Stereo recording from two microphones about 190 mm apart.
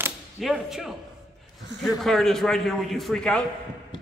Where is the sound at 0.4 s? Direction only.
Centre (ahead or behind).